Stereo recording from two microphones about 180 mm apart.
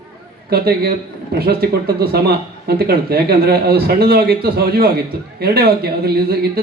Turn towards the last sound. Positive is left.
turn(degrees=-60)  # may be behind; listen again after turning